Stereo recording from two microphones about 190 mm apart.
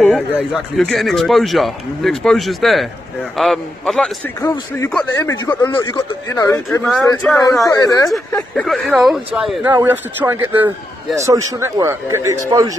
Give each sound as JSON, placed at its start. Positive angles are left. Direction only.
{"t": 0.0, "sound": "speech", "side_deg": 0}
{"t": 4.4, "sound": "speech", "side_deg": 15}
{"t": 7.7, "sound": "speech", "side_deg": 20}
{"t": 8.3, "sound": "a man's voice", "side_deg": 5}